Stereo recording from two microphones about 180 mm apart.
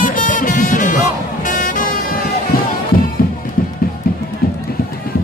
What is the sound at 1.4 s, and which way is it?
Vehicle, 45° left (ahead or behind).